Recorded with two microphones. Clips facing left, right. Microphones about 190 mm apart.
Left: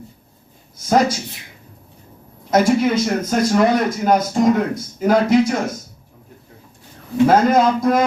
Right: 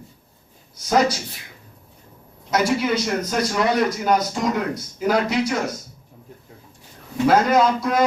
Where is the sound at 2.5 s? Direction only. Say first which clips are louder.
Left 5 dB; 50° left (ahead or behind).